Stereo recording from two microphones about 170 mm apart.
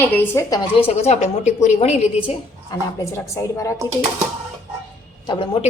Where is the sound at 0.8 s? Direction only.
35° left (ahead or behind).